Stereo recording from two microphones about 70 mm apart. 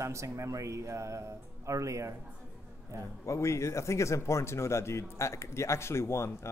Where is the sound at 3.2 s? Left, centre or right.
Left.